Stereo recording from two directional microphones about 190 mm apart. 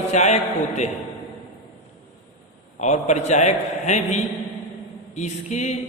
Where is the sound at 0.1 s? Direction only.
35° left (ahead or behind).